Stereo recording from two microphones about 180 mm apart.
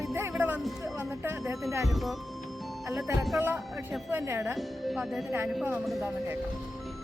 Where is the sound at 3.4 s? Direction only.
10° right (ahead or behind).